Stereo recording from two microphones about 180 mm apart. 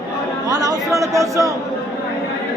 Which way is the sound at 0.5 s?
20° right (ahead or behind).